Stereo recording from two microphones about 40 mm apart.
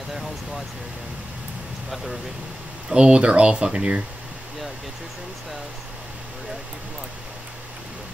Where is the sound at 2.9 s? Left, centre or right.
Right.